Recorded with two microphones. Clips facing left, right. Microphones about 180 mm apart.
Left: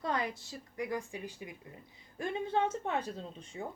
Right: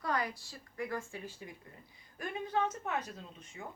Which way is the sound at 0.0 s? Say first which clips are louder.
Left 1 dB; 25° left (ahead or behind).